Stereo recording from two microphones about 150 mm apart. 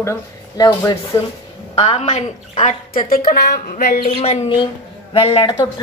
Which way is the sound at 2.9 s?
70° left (ahead or behind).